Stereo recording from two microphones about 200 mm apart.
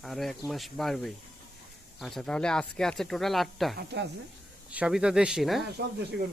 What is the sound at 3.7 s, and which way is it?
Speech, 55° right (ahead or behind).